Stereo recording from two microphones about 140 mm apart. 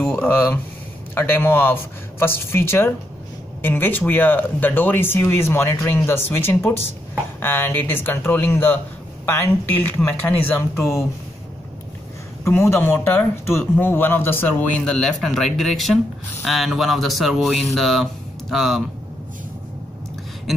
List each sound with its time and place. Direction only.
0.0 s speech: 15° left (ahead or behind)
12.4 s speech: 20° left (ahead or behind); by 18.8 s centre (ahead or behind)